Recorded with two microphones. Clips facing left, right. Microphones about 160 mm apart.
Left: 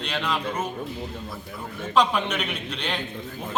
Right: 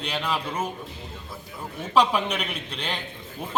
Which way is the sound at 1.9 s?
5° right (ahead or behind).